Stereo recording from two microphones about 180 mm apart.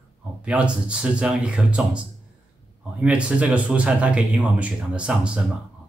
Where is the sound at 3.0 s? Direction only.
10° right (ahead or behind).